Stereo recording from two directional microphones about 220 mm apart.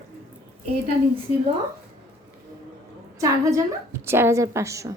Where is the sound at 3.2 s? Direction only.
15° right (ahead or behind).